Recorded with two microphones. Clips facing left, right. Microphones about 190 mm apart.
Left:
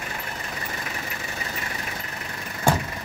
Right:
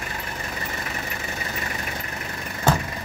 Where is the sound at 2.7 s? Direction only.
10° left (ahead or behind).